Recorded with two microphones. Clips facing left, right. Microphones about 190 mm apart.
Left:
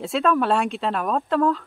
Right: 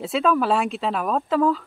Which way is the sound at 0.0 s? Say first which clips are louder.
Even; centre (ahead or behind).